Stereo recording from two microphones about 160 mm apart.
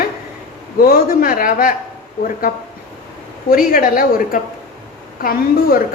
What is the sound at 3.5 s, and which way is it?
Speech, 60° left (ahead or behind).